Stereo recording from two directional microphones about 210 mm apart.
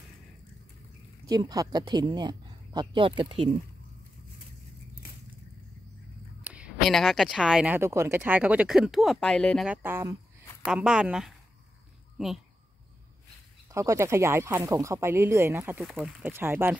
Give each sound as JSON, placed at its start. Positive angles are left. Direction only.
{"t": 1.2, "sound": "speech", "side_deg": -15}
{"t": 6.4, "sound": "speech", "side_deg": -5}
{"t": 9.8, "sound": "speech", "side_deg": -10}
{"t": 13.7, "sound": "speech", "side_deg": -15}